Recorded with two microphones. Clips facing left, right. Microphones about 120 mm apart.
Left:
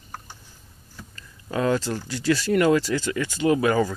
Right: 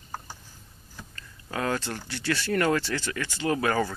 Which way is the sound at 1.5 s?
20° left (ahead or behind).